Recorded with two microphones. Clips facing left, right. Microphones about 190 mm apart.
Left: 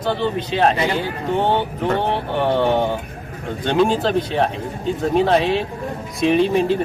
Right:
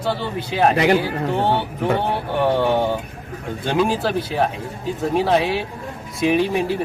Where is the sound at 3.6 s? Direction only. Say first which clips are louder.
Left 2 dB; 5° right (ahead or behind).